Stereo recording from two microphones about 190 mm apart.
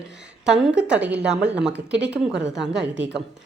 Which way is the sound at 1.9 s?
65° right (ahead or behind).